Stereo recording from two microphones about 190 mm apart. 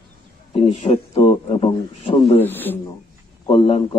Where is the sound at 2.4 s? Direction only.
10° left (ahead or behind).